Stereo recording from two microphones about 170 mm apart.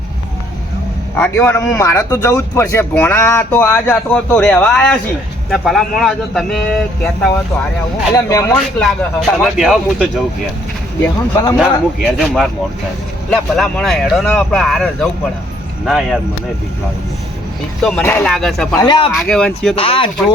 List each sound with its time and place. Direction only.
1.1 s a man's voice: 10° left (ahead or behind)
8.1 s speech: 20° left (ahead or behind)
8.5 s speech: centre (ahead or behind)
11.5 s speech: 5° right (ahead or behind)
18.0 s a man's voice: 15° left (ahead or behind)
18.3 s speech: centre (ahead or behind)
18.7 s speech: 20° left (ahead or behind)
19.1 s speech: 5° left (ahead or behind)
19.7 s speech: 35° left (ahead or behind)